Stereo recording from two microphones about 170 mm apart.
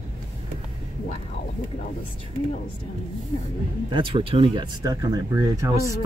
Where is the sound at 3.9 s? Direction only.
30° right (ahead or behind).